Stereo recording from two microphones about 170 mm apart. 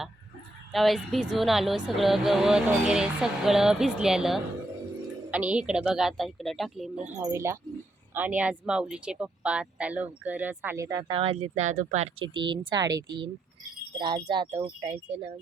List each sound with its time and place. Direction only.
0.7 s speech: centre (ahead or behind)
7.2 s speech: 15° right (ahead or behind)
11.1 s speech: 30° right (ahead or behind)
12.3 s speech: 25° right (ahead or behind)